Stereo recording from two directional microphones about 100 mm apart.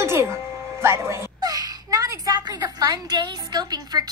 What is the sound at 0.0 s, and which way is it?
Music, 25° right (ahead or behind).